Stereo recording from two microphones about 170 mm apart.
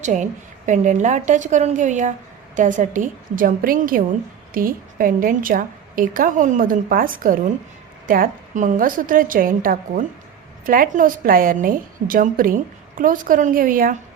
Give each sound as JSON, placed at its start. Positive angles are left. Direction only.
{"t": 0.0, "sound": "a woman's voice", "side_deg": -45}